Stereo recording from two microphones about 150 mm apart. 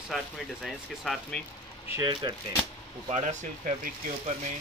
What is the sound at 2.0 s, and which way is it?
Speech, 30° right (ahead or behind).